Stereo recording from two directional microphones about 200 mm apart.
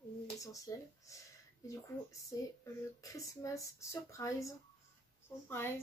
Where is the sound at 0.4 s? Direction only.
15° left (ahead or behind).